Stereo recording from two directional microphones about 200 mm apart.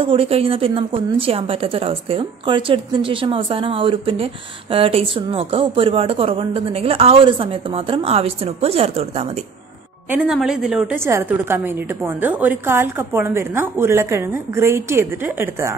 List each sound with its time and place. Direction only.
0.0 s a woman's voice: 30° right (ahead or behind)
10.0 s a woman's voice: 5° right (ahead or behind)